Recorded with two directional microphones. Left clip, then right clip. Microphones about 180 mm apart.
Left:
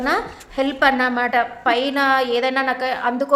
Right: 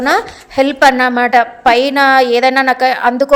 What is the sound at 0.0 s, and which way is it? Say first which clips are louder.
A woman's voice: right 8 dB; 45° right (ahead or behind).